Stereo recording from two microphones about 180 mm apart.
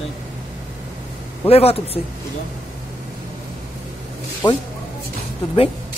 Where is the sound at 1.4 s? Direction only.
35° left (ahead or behind).